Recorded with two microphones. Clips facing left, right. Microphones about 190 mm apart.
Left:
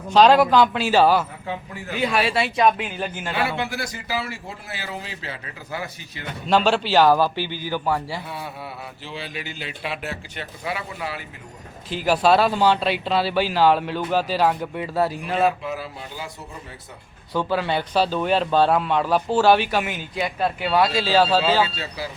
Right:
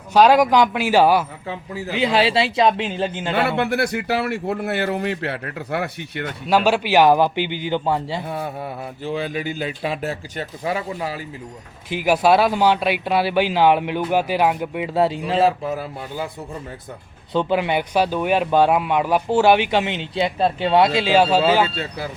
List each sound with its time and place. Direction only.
0.1 s speech: 10° right (ahead or behind)
2.0 s a man's voice: 25° right (ahead or behind)
3.3 s speech: 60° right (ahead or behind)
6.5 s a man's voice: 10° right (ahead or behind)
8.3 s speech: 45° right (ahead or behind)
11.9 s speech: 15° right (ahead or behind)
15.8 s speech: 55° right (ahead or behind)
17.3 s speech: 20° right (ahead or behind)
21.6 s speech: 55° right (ahead or behind)